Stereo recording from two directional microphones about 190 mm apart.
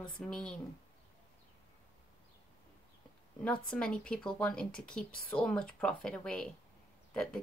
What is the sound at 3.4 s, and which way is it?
Speech, 5° left (ahead or behind).